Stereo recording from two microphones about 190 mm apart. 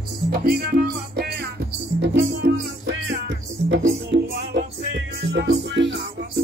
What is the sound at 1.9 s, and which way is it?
Music, 75° right (ahead or behind).